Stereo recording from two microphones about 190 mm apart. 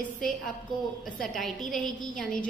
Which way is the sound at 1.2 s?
Centre (ahead or behind).